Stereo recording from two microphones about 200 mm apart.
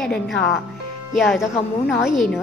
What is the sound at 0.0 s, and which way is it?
A woman's voice, centre (ahead or behind).